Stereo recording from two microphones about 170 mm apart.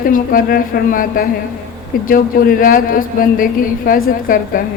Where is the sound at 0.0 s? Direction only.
55° left (ahead or behind).